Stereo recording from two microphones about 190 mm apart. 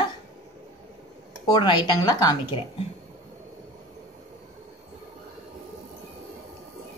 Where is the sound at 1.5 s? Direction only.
25° left (ahead or behind).